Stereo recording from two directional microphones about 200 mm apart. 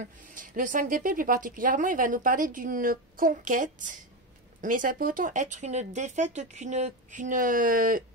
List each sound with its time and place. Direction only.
0.0 s speech: 40° right (ahead or behind)